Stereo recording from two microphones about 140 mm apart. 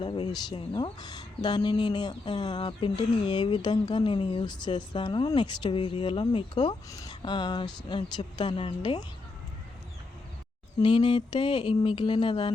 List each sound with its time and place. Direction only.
0.0 s speech: 35° left (ahead or behind)
10.8 s speech: 35° left (ahead or behind)